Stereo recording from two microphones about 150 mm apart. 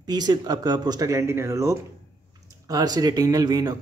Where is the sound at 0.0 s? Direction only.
25° right (ahead or behind).